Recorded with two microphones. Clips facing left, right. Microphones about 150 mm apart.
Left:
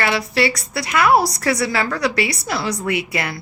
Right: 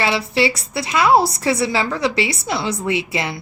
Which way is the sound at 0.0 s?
25° right (ahead or behind).